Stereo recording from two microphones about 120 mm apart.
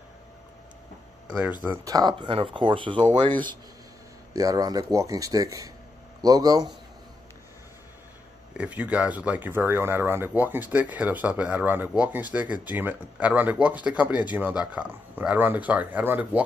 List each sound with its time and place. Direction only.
1.9 s speech: 35° right (ahead or behind)
4.3 s speech: 30° right (ahead or behind)
8.5 s speech: 10° right (ahead or behind)